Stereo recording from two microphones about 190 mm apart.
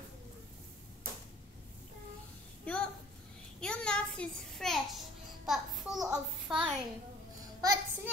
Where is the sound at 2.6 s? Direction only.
5° left (ahead or behind).